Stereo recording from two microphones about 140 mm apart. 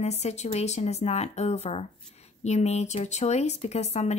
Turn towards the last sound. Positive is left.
turn(degrees=50)  # may be behind; listen again after turning